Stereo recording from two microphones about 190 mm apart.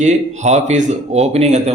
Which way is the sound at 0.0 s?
40° right (ahead or behind).